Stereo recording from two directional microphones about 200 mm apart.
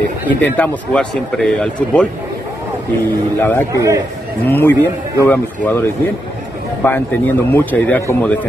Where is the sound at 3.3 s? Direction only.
10° left (ahead or behind).